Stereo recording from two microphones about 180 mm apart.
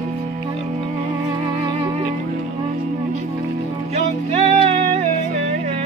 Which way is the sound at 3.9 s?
35° right (ahead or behind).